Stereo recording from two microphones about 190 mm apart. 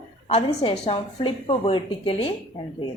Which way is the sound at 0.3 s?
30° left (ahead or behind).